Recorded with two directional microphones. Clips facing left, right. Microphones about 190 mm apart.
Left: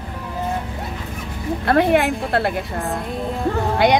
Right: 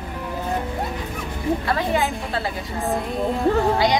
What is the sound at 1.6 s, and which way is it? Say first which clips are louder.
A woman's voice: left 11 dB; 60° left (ahead or behind).